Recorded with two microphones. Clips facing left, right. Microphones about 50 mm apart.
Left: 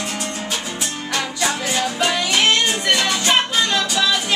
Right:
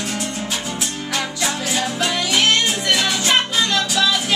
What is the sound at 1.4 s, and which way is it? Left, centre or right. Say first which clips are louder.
Music: left 2 dB; centre.